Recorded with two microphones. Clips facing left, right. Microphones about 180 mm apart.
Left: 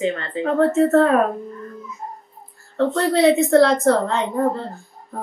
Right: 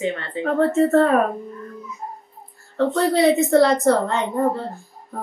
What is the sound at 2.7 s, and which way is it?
A woman's voice, centre (ahead or behind).